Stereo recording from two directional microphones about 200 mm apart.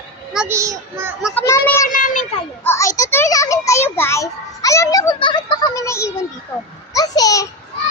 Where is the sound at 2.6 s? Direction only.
15° left (ahead or behind).